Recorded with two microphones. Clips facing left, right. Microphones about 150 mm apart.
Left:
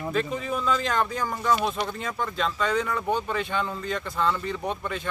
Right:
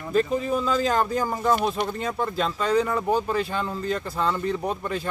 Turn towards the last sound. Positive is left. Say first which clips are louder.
# right 1 dB
turn(degrees=-35)  # may be behind; listen again after turning